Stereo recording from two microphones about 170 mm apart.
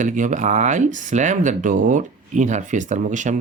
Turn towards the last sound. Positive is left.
turn(degrees=-45)  # may be behind; listen again after turning